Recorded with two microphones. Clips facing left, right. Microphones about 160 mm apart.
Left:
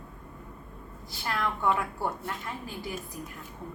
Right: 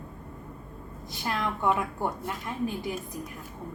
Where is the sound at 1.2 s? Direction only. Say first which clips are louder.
Right 1 dB; 20° right (ahead or behind).